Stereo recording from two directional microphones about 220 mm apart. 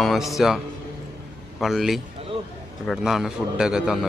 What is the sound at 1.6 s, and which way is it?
A man's voice, centre (ahead or behind).